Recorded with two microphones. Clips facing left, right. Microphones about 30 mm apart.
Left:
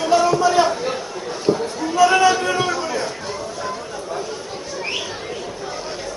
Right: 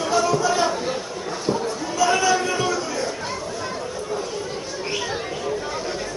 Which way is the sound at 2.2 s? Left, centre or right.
Left.